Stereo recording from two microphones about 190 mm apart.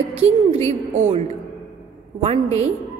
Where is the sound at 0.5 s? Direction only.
35° right (ahead or behind).